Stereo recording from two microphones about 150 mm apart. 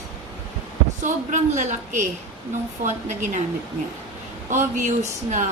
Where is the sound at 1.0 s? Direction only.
55° right (ahead or behind).